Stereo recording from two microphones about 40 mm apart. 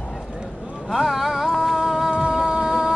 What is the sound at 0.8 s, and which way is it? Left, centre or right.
Music, centre.